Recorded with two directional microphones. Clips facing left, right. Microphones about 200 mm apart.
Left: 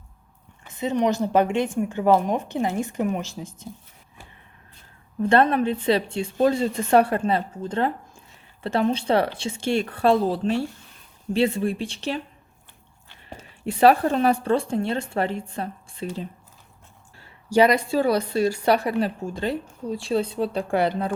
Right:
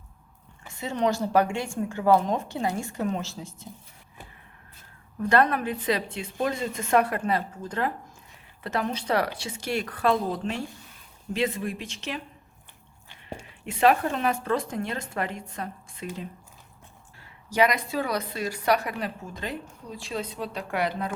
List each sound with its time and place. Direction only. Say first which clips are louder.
0.7 s a woman's voice: left 4 dB; 20° left (ahead or behind)
5.2 s a woman's voice: left 4 dB; 25° left (ahead or behind)
13.4 s speech: left 5 dB; 35° left (ahead or behind)